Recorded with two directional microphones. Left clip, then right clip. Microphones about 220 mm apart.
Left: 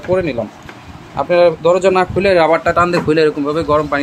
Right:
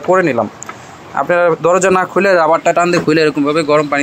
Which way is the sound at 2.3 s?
10° right (ahead or behind).